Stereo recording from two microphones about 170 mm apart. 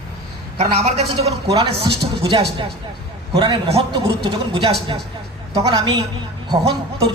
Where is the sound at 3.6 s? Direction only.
35° right (ahead or behind).